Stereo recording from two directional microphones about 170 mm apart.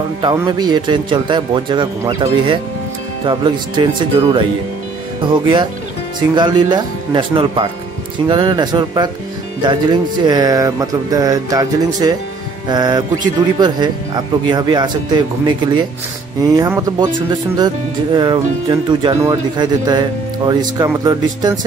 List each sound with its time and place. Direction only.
0.2 s speech: 25° right (ahead or behind)